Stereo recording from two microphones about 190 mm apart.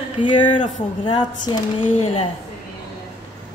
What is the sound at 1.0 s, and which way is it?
Speech, 20° left (ahead or behind).